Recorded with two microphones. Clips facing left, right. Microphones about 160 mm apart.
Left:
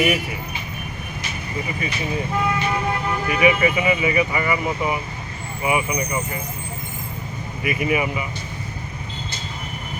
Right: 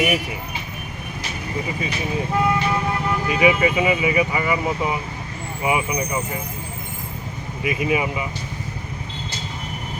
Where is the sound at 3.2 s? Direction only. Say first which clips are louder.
Even; 20° right (ahead or behind).